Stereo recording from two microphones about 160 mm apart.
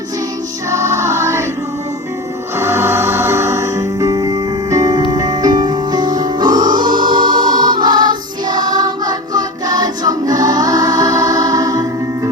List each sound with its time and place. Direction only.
0.7 s music: 20° right (ahead or behind)
2.6 s music: 15° right (ahead or behind)